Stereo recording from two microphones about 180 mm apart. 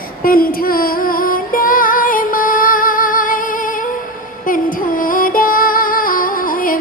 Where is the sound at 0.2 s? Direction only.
55° left (ahead or behind).